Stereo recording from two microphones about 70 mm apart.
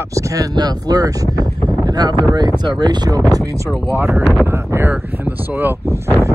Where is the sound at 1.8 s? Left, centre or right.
Right.